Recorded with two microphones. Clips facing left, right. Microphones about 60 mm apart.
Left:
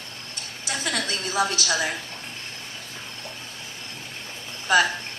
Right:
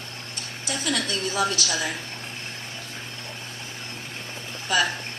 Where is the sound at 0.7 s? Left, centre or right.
Left.